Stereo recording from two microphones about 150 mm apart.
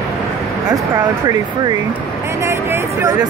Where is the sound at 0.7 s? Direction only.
25° right (ahead or behind).